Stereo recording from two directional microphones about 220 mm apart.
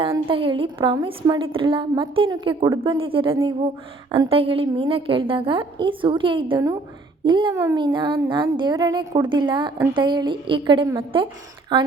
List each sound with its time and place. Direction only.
0.3 s a woman's voice: 25° right (ahead or behind)